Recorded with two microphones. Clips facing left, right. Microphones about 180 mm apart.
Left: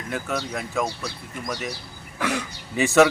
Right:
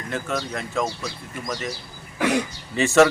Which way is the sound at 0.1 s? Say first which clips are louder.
Right 1 dB; 5° left (ahead or behind).